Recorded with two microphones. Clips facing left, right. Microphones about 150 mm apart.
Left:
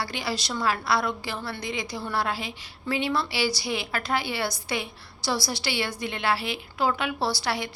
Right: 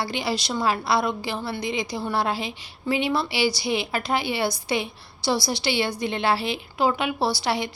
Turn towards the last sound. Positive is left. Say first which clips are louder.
# right 3 dB
turn(degrees=-20)  # may be behind; listen again after turning